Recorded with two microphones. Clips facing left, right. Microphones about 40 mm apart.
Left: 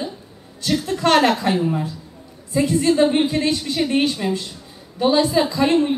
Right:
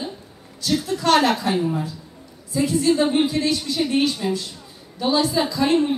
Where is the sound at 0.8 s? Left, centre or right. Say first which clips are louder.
Left 2 dB; left.